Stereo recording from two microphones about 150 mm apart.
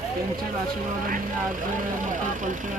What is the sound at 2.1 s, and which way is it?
Speech, 60° right (ahead or behind).